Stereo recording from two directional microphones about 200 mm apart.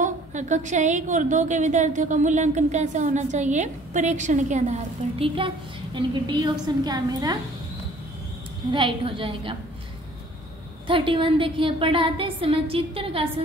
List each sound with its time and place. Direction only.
0.0 s a woman's voice: 35° right (ahead or behind); by 7.3 s 20° right (ahead or behind)
8.7 s a woman's voice: 25° right (ahead or behind)
10.9 s a woman's voice: 25° right (ahead or behind)